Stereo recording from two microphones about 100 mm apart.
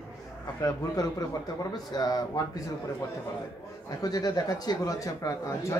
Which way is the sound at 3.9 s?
40° left (ahead or behind).